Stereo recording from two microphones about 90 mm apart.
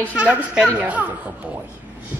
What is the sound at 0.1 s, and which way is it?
Speech, 15° right (ahead or behind).